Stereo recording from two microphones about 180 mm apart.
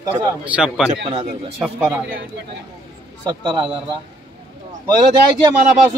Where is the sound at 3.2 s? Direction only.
20° right (ahead or behind).